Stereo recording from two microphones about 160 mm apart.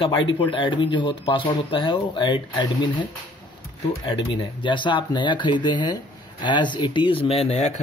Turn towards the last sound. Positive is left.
turn(degrees=45)  # may be behind; listen again after turning